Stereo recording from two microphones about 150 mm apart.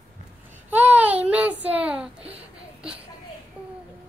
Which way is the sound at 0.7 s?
10° right (ahead or behind).